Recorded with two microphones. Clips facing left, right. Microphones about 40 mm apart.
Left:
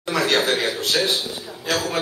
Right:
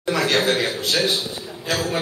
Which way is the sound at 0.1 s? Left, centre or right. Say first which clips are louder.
Even; centre.